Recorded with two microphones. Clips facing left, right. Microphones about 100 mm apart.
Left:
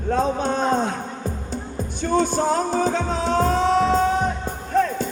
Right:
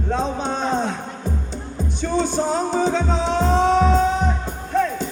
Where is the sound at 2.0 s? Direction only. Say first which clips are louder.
Left 1 dB; 45° left (ahead or behind).